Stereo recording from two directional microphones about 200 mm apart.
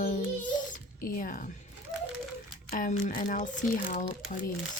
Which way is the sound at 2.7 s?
40° left (ahead or behind).